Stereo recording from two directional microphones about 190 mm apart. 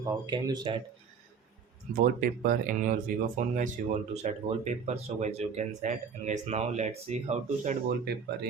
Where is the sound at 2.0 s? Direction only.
45° right (ahead or behind).